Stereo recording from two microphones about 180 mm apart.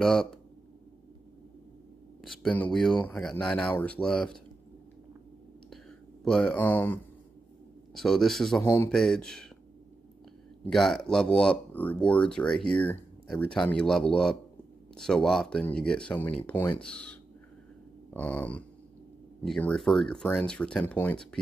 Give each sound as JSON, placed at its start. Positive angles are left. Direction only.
{"t": 0.0, "sound": "speech", "side_deg": 0}
{"t": 2.2, "sound": "speech", "side_deg": 5}
{"t": 6.2, "sound": "speech", "side_deg": 5}
{"t": 10.6, "sound": "speech", "side_deg": 0}